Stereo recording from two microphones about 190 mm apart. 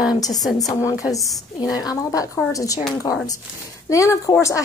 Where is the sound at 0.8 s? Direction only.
15° left (ahead or behind).